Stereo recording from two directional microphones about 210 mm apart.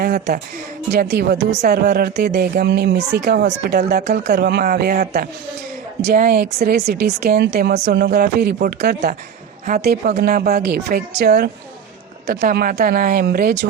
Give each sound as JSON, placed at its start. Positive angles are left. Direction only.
{"t": 0.0, "sound": "speech", "side_deg": -45}
{"t": 6.0, "sound": "speech", "side_deg": -35}